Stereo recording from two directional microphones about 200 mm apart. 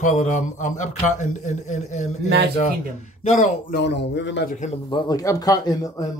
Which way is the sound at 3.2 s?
35° left (ahead or behind).